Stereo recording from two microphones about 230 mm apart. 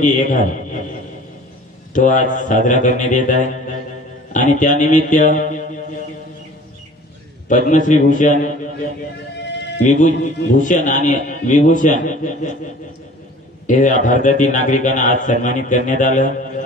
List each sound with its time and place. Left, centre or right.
0.0 s a man's voice: left
2.0 s a man's voice: left
7.4 s a man's voice: left
9.8 s a man's voice: left
13.7 s a man's voice: left